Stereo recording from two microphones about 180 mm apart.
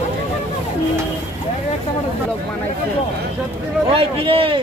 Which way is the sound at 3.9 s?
30° right (ahead or behind).